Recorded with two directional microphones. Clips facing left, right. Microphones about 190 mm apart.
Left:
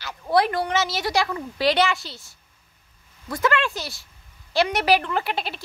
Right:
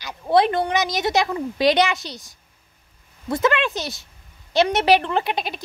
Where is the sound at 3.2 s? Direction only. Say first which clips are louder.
Right 3 dB; 20° right (ahead or behind).